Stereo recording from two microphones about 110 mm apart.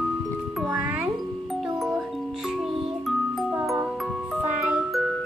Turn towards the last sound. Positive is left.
turn(degrees=-5)  # may be behind; listen again after turning